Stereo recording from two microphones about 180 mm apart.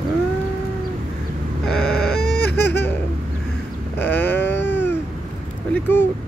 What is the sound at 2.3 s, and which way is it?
Baby cry, 65° left (ahead or behind).